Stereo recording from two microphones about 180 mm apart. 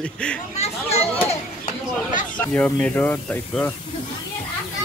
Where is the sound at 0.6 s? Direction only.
35° left (ahead or behind).